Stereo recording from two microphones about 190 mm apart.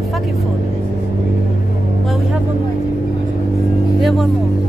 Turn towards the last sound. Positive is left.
turn(degrees=0)  # may be behind; listen again after turning